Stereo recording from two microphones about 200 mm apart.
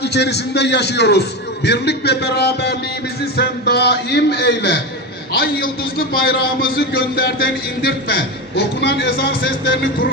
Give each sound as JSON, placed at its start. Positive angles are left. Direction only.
{"t": 0.0, "sound": "a man's voice", "side_deg": 55}